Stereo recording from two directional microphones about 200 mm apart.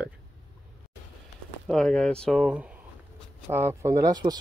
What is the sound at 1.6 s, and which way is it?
Speech, centre (ahead or behind).